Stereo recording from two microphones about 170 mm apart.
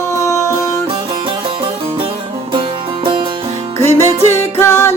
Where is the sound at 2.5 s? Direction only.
30° right (ahead or behind).